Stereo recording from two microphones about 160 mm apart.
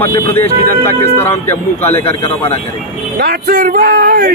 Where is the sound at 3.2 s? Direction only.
75° right (ahead or behind).